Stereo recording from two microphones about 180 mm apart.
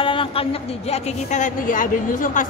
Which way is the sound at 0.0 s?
30° left (ahead or behind).